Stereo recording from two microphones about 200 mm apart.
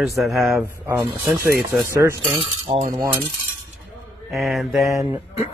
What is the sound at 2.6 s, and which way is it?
Cutlery, 35° right (ahead or behind).